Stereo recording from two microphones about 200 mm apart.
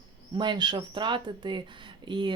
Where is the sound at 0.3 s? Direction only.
25° right (ahead or behind).